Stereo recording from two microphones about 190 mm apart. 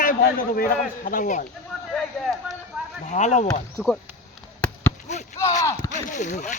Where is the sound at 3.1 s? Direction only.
40° left (ahead or behind).